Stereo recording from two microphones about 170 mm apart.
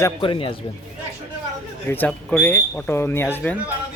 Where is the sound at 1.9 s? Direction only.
10° left (ahead or behind).